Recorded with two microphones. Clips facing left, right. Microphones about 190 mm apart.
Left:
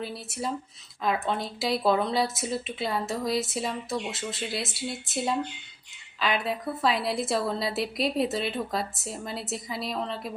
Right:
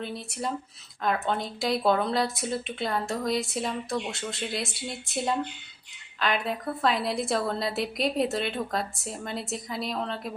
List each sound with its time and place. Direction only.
0.0 s speech: centre (ahead or behind)